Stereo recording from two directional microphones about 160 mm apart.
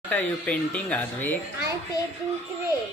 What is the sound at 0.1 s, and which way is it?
Speech, 10° left (ahead or behind).